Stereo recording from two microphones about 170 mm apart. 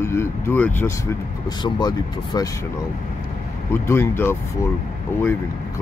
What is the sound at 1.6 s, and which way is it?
Speech, 25° left (ahead or behind).